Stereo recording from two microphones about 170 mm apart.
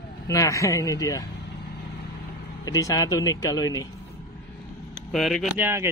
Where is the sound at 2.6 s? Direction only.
20° left (ahead or behind).